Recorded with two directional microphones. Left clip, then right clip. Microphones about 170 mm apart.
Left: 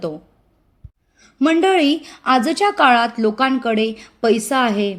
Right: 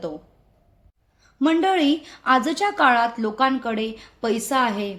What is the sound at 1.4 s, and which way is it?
Speech, 35° left (ahead or behind).